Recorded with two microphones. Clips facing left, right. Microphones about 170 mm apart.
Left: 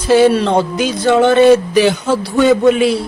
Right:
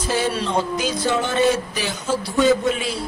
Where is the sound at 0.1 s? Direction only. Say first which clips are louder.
Left 12 dB; 70° left (ahead or behind).